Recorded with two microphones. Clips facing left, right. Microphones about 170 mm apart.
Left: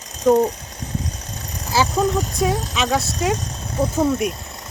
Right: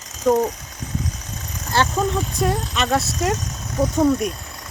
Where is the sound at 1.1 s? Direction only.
35° left (ahead or behind).